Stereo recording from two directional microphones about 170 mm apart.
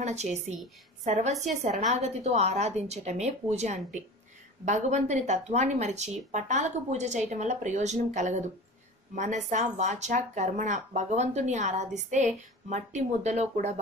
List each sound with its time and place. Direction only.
0.0 s a woman's voice: 40° right (ahead or behind)